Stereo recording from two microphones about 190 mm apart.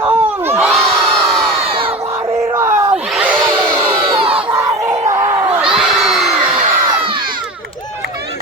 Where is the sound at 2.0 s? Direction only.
15° right (ahead or behind).